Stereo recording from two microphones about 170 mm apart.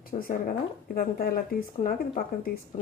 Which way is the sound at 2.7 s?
45° left (ahead or behind).